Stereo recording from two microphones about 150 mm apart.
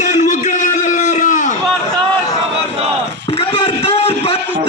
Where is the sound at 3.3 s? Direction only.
40° left (ahead or behind).